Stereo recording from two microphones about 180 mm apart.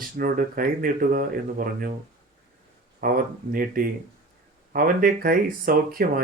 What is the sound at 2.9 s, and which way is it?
Speech, 55° right (ahead or behind).